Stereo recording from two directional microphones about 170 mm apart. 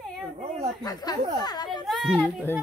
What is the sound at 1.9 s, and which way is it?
Speech, 5° right (ahead or behind).